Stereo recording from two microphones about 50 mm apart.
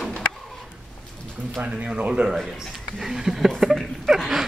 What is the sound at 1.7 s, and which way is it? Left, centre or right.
Speech, right.